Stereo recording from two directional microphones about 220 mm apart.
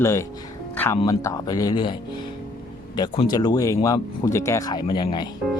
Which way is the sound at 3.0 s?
20° left (ahead or behind).